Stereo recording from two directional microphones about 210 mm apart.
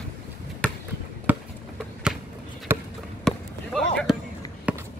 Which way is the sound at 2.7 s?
10° right (ahead or behind).